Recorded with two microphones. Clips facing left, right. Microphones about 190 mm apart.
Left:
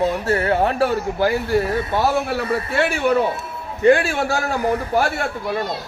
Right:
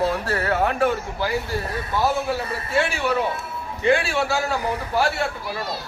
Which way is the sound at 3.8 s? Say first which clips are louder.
Left 5 dB; 45° left (ahead or behind).